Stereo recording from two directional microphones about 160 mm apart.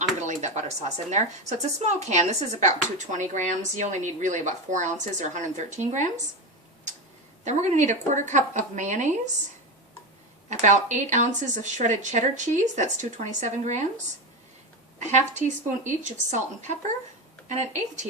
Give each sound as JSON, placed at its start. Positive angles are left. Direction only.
{"t": 0.3, "sound": "a sound", "side_deg": -45}
{"t": 1.1, "sound": "speech", "side_deg": -45}
{"t": 7.4, "sound": "speech", "side_deg": -45}
{"t": 10.5, "sound": "speech", "side_deg": -45}